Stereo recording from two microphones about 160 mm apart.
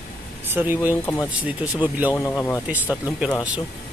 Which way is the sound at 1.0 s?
10° left (ahead or behind).